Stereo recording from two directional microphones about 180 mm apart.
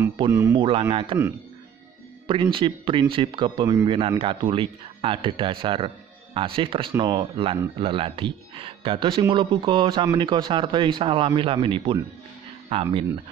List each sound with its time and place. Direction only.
0.3 s speech: 15° right (ahead or behind)
0.6 s speech: 30° right (ahead or behind)